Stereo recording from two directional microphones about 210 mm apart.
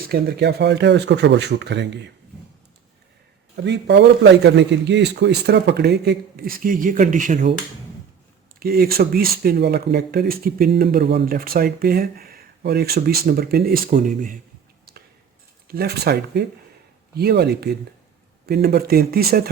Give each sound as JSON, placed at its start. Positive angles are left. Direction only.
{"t": 0.1, "sound": "speech", "side_deg": -50}
{"t": 3.5, "sound": "a man's voice", "side_deg": -55}
{"t": 8.5, "sound": "a man's voice", "side_deg": -45}
{"t": 15.6, "sound": "a man's voice", "side_deg": -45}